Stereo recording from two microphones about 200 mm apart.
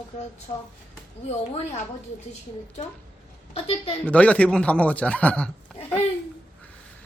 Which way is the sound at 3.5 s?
30° left (ahead or behind).